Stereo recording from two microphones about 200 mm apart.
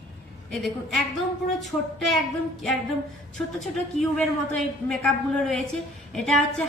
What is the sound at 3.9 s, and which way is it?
A woman's voice, 5° left (ahead or behind).